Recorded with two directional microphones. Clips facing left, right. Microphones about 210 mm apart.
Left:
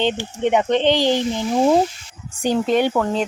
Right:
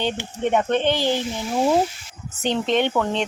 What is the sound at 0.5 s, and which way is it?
Speech, 15° left (ahead or behind).